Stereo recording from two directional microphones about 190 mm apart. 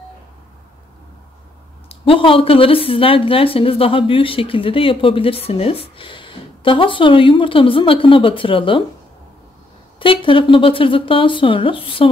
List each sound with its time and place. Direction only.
1.9 s a woman's voice: 30° left (ahead or behind)
9.9 s a woman's voice: 25° left (ahead or behind)